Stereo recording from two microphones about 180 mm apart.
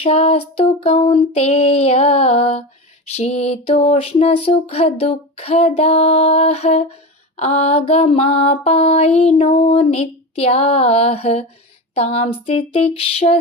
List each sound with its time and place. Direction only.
0.0 s female singing: 35° left (ahead or behind)